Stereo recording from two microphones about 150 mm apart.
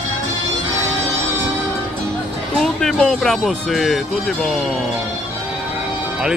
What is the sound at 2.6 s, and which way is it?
Speech, centre (ahead or behind).